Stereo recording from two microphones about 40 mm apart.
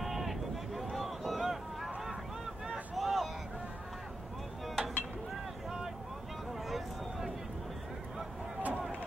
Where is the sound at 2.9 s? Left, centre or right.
Centre.